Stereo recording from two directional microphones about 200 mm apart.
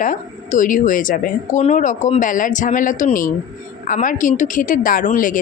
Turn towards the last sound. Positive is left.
turn(degrees=40)  # may be behind; listen again after turning